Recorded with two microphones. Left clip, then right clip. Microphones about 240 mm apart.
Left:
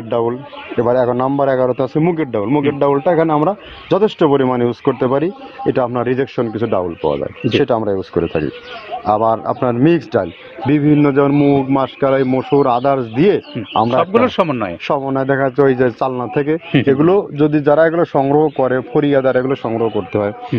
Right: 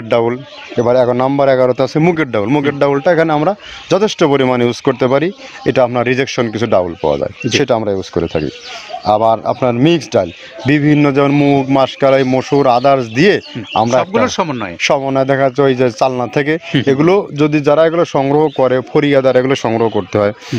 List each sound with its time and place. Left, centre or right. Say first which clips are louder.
0.1 s a man's voice: right 4 dB; right
7.5 s a man's voice: right 1 dB; right
14.1 s speech: left 1 dB; centre
14.8 s a man's voice: right 8 dB; right